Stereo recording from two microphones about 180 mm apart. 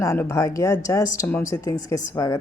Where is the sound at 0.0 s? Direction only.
15° left (ahead or behind).